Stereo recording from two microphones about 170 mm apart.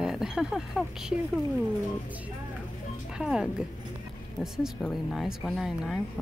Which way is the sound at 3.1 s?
5° right (ahead or behind).